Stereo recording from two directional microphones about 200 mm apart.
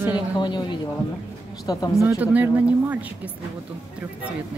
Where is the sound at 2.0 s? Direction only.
10° right (ahead or behind).